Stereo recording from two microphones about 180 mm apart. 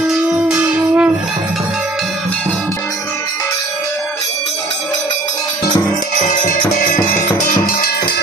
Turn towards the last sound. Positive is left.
turn(degrees=45)  # may be behind; listen again after turning